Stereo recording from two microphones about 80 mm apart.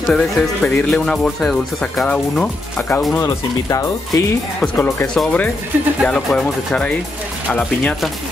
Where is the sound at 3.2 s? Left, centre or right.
Left.